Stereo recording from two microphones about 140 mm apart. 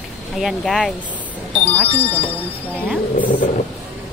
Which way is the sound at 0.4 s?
Centre (ahead or behind).